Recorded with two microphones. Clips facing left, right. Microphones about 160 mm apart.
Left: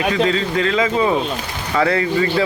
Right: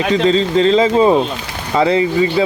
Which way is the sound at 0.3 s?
25° right (ahead or behind).